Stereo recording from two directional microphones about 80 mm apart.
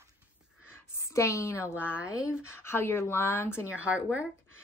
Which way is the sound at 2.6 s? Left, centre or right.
Left.